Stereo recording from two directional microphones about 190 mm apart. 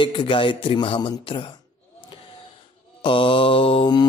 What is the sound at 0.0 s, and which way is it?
Speech, 25° left (ahead or behind).